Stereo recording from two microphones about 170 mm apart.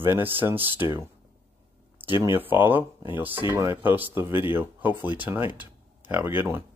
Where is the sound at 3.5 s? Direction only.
15° right (ahead or behind).